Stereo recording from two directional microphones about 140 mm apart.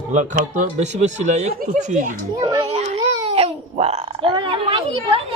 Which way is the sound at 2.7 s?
50° right (ahead or behind).